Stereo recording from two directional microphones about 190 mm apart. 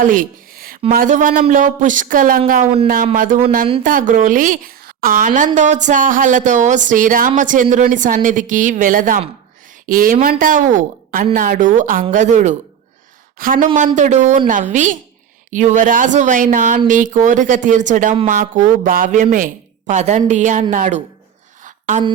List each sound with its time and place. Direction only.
0.0 s music: 45° right (ahead or behind)
0.9 s a woman's voice: 45° right (ahead or behind)